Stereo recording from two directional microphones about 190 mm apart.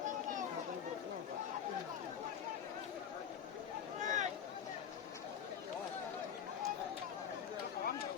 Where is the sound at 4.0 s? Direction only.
40° right (ahead or behind).